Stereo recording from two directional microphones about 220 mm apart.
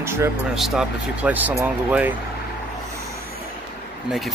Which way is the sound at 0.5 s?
Centre (ahead or behind).